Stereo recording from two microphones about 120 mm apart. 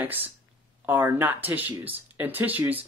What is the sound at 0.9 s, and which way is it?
Speech, 15° right (ahead or behind).